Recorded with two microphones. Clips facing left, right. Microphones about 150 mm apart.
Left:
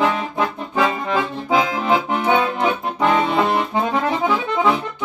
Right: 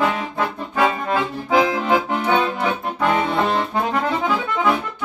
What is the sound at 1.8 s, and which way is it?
Accordion, 20° left (ahead or behind).